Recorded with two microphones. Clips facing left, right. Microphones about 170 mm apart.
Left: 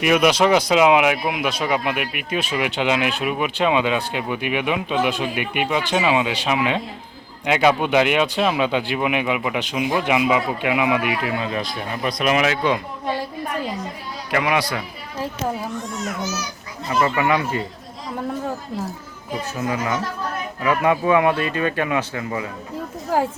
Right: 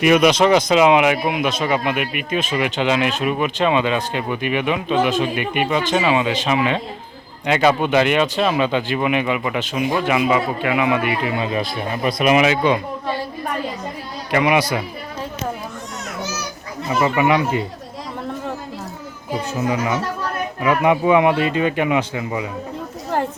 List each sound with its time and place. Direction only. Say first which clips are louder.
0.0 s speech: right 3 dB; 5° left (ahead or behind)
11.3 s speech: right 3 dB; 5° right (ahead or behind)
14.4 s speech: right 5 dB; 15° right (ahead or behind)
16.9 s speech: right 2 dB; 15° right (ahead or behind)
19.5 s speech: right 3 dB; 20° right (ahead or behind)
23.1 s a woman's voice: left 1 dB; 5° left (ahead or behind)